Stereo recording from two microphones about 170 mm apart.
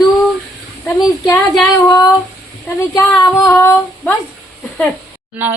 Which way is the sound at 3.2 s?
20° left (ahead or behind).